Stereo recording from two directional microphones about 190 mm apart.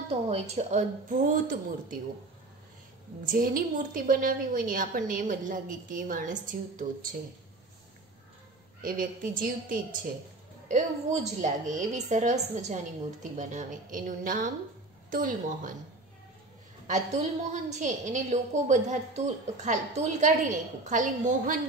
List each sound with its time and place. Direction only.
0.1 s a woman's voice: 35° right (ahead or behind)
3.3 s a woman's voice: 50° right (ahead or behind)
8.8 s a woman's voice: 45° right (ahead or behind)
16.8 s a woman's voice: 40° right (ahead or behind)